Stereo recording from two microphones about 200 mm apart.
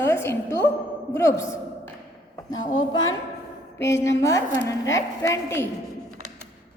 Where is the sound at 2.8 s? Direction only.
20° left (ahead or behind).